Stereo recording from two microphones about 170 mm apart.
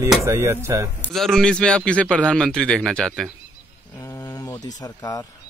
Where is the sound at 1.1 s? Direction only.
Centre (ahead or behind).